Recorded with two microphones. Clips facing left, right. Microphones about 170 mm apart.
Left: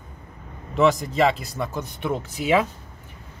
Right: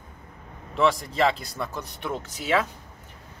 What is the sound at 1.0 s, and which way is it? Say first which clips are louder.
Speech: left 3 dB; 5° left (ahead or behind).